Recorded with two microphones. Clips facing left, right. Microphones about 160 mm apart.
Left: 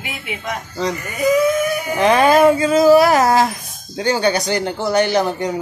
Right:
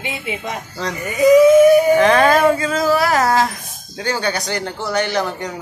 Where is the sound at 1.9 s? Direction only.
15° left (ahead or behind).